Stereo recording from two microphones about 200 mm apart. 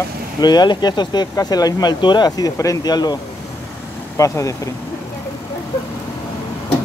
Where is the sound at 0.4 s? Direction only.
20° left (ahead or behind).